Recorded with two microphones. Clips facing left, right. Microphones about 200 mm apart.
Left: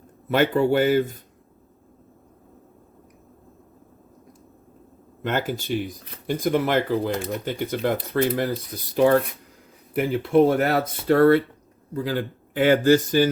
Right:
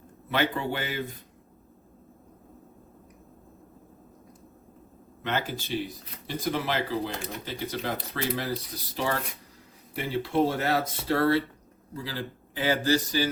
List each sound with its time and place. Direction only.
0.3 s speech: 45° left (ahead or behind)
5.2 s speech: 50° left (ahead or behind)
9.9 s speech: 55° left (ahead or behind)